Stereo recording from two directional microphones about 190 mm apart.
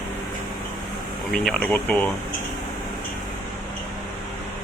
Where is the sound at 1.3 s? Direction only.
5° left (ahead or behind).